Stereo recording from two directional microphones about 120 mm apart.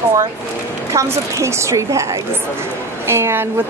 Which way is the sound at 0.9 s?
25° right (ahead or behind).